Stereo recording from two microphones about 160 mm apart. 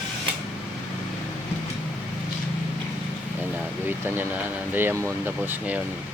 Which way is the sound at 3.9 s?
15° right (ahead or behind).